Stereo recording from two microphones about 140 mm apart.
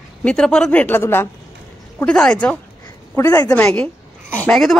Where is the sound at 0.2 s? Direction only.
5° left (ahead or behind).